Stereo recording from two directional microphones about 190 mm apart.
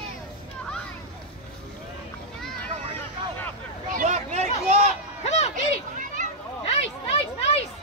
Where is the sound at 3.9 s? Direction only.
40° right (ahead or behind).